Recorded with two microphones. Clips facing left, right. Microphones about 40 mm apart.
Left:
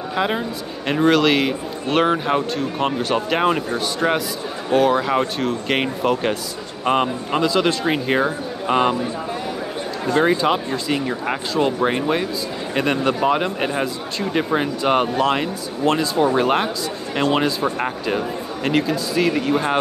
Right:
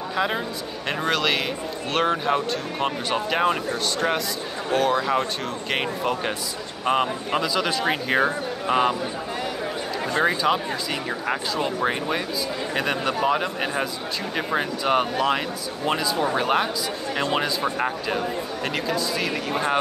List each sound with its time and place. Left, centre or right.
0.1 s a man's voice: centre
8.1 s a man's voice: centre
10.3 s speech: centre
14.3 s speech: centre
15.8 s a man's voice: centre
16.3 s a man's voice: centre